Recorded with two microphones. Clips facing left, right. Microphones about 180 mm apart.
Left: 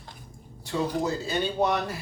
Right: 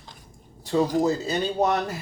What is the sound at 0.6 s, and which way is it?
Speech, 40° right (ahead or behind).